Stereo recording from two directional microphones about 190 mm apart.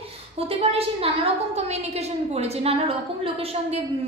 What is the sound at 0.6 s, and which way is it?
A woman's voice, 30° right (ahead or behind).